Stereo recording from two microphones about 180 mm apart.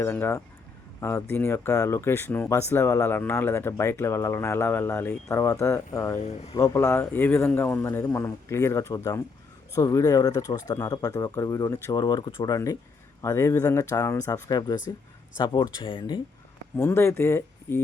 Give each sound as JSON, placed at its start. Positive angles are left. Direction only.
{"t": 0.0, "sound": "speech", "side_deg": 15}
{"t": 6.2, "sound": "speech", "side_deg": 35}
{"t": 6.5, "sound": "speech", "side_deg": 15}
{"t": 16.7, "sound": "speech", "side_deg": 15}